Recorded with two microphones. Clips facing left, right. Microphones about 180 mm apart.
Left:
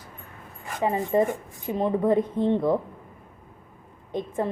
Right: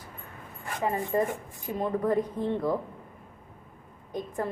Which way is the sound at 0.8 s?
20° left (ahead or behind).